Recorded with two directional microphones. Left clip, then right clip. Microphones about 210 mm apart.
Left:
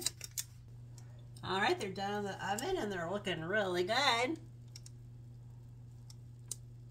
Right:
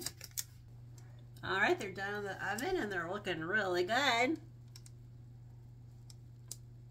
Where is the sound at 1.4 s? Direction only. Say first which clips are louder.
Right 1 dB; 25° right (ahead or behind).